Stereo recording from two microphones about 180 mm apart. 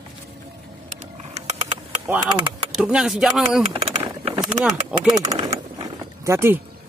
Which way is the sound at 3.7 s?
30° right (ahead or behind).